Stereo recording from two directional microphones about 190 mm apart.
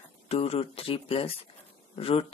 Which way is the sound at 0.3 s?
30° left (ahead or behind).